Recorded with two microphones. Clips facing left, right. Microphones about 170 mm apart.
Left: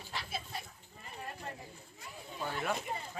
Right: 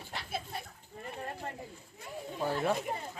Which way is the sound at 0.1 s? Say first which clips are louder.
Right 2 dB; 55° right (ahead or behind).